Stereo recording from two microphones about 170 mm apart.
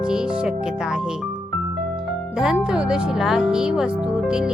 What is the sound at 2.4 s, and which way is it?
Music, 5° right (ahead or behind).